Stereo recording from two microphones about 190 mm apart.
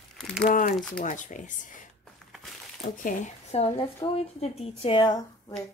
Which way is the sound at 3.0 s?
40° left (ahead or behind).